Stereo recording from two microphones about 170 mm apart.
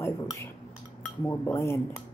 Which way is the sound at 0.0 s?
15° left (ahead or behind).